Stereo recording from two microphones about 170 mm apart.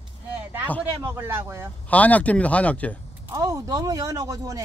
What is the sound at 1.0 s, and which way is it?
Speech, 15° right (ahead or behind).